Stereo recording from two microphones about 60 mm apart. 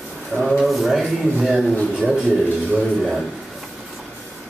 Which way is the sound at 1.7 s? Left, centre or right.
Centre.